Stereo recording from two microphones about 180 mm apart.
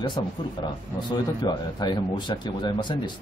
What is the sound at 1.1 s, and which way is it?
Speech, 25° left (ahead or behind).